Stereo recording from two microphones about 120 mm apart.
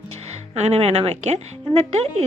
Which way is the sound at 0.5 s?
65° right (ahead or behind).